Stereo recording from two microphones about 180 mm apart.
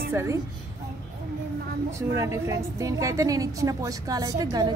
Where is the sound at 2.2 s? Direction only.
15° right (ahead or behind).